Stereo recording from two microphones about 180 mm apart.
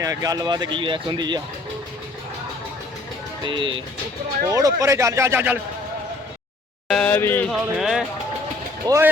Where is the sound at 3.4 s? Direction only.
25° right (ahead or behind).